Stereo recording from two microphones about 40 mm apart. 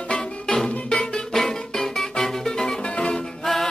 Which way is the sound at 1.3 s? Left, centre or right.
Centre.